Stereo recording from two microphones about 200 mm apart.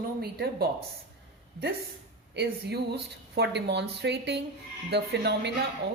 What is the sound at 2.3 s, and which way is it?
A woman's voice, 55° right (ahead or behind).